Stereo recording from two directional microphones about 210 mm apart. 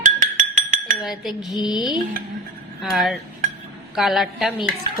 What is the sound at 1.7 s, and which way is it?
Music, 20° left (ahead or behind).